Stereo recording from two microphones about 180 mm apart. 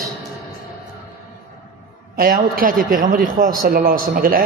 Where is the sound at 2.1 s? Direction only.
55° right (ahead or behind).